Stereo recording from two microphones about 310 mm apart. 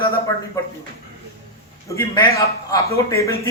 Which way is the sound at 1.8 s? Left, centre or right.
Centre.